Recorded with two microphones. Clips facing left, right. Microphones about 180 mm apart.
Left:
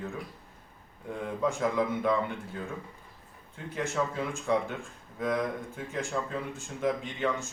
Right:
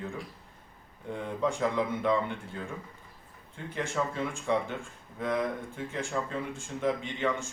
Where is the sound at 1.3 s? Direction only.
5° left (ahead or behind).